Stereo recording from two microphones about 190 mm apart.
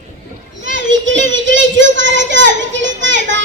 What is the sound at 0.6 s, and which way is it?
Child singing, 75° right (ahead or behind).